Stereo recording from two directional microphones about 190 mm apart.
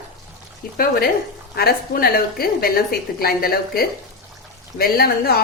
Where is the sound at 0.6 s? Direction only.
50° left (ahead or behind).